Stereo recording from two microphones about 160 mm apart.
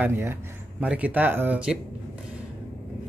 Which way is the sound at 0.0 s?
15° right (ahead or behind).